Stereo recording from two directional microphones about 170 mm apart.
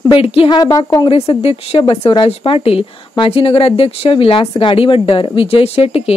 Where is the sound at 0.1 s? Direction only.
35° left (ahead or behind).